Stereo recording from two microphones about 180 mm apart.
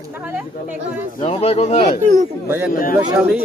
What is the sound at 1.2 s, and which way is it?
Speech, 35° left (ahead or behind).